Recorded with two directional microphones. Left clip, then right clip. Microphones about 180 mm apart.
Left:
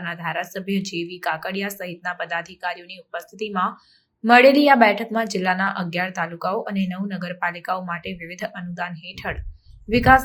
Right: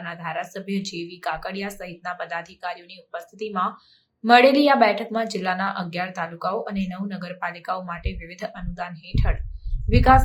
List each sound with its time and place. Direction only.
0.0 s a woman's voice: 15° left (ahead or behind)